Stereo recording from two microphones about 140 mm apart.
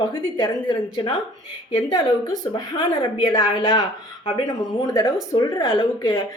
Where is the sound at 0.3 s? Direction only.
35° left (ahead or behind).